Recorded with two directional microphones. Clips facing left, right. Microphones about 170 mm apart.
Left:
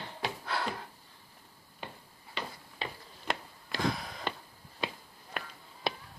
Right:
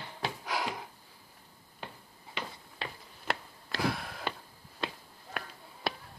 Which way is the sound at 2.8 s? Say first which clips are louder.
Left 2 dB; 5° right (ahead or behind).